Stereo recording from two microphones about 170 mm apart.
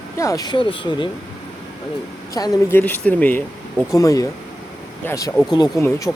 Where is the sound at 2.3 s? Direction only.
20° left (ahead or behind).